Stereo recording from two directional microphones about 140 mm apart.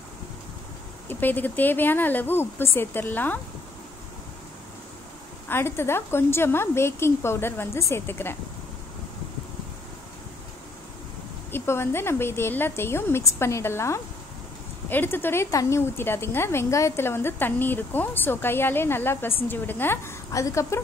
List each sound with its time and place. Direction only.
1.0 s speech: 15° left (ahead or behind)
5.5 s speech: 15° left (ahead or behind)
11.5 s a woman's voice: 20° left (ahead or behind)